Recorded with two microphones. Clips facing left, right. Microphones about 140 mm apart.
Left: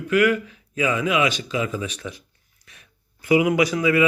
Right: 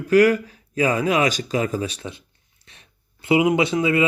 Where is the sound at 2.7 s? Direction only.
30° right (ahead or behind).